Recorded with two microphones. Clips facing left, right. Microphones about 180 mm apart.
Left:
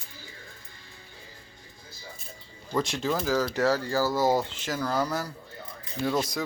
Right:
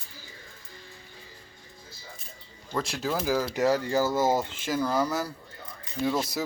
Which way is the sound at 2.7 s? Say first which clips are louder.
Left 2 dB; centre (ahead or behind).